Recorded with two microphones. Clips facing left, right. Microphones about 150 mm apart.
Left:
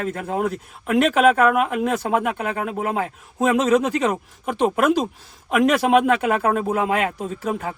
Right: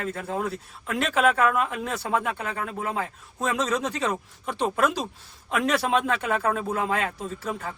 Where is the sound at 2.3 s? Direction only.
60° left (ahead or behind).